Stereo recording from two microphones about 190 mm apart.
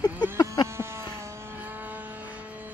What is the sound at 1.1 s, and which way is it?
Vehicle, 15° right (ahead or behind).